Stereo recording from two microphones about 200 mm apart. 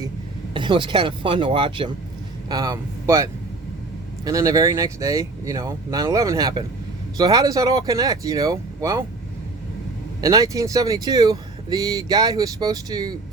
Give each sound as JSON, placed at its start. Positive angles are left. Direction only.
{"t": 0.5, "sound": "speech", "side_deg": -25}
{"t": 10.2, "sound": "speech", "side_deg": -20}